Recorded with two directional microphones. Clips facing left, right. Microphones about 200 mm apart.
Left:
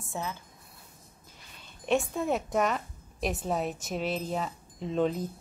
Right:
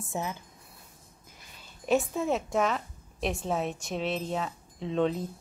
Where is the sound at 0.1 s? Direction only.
20° right (ahead or behind).